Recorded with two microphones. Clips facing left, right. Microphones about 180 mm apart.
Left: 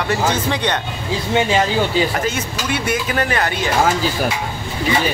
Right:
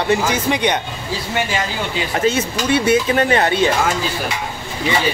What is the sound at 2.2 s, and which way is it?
Speech, 25° right (ahead or behind).